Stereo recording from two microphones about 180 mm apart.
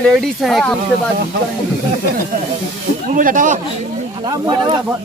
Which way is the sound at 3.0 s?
50° right (ahead or behind).